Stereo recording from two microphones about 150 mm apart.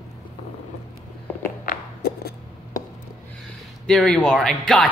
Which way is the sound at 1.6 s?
90° left.